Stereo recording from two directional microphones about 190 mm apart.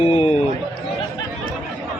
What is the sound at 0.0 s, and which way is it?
Speech, 30° left (ahead or behind).